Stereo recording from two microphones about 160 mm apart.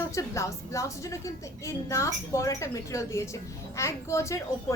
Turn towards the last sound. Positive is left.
turn(degrees=20)  # may be behind; listen again after turning